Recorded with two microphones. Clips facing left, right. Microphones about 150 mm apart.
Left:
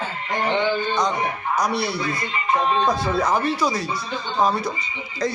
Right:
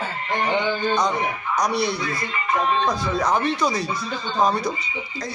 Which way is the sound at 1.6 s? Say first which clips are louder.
Right 2 dB; 5° left (ahead or behind).